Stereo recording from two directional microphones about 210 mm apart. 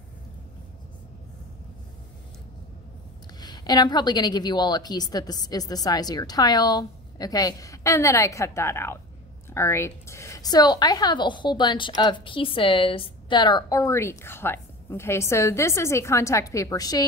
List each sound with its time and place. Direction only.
3.3 s a woman's voice: 20° left (ahead or behind)